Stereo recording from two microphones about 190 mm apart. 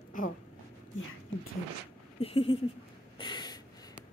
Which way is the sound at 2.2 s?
30° left (ahead or behind).